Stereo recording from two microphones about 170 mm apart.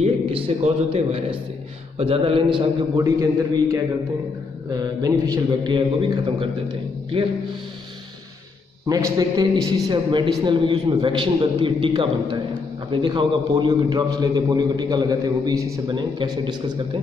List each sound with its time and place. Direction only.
0.0 s a man's voice: 35° right (ahead or behind)
2.6 s a man's voice: 20° right (ahead or behind)
8.8 s a man's voice: 20° right (ahead or behind)